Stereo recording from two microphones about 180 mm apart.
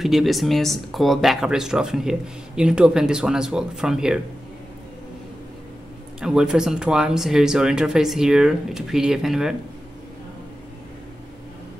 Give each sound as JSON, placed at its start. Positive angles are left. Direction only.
{"t": 0.0, "sound": "speech", "side_deg": 0}
{"t": 6.2, "sound": "speech", "side_deg": -5}